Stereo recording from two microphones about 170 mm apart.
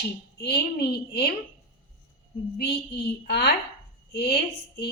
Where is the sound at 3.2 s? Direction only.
80° left.